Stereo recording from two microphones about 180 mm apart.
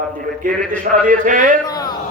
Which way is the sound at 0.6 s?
5° left (ahead or behind).